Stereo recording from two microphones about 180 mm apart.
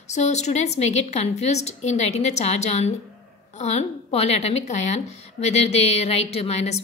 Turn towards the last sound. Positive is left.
turn(degrees=35)  # may be behind; listen again after turning